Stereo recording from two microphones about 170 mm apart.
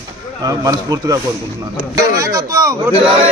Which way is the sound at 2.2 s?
20° right (ahead or behind).